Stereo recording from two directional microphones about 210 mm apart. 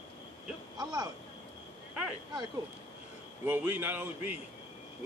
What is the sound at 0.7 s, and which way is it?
Speech, 20° right (ahead or behind).